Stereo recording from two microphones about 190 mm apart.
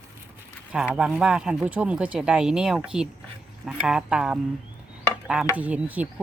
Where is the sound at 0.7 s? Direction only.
5° right (ahead or behind).